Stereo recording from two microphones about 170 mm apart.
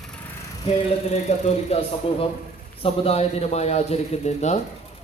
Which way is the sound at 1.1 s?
40° left (ahead or behind).